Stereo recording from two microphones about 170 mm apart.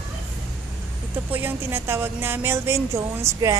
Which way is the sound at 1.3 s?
10° right (ahead or behind).